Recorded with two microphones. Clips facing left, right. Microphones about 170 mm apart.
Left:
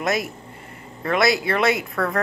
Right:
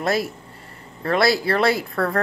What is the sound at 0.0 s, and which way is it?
Speech, 30° right (ahead or behind).